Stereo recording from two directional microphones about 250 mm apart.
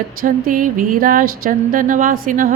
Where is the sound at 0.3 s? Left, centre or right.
Right.